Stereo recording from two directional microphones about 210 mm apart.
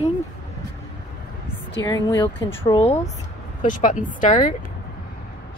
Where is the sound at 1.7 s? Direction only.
15° left (ahead or behind).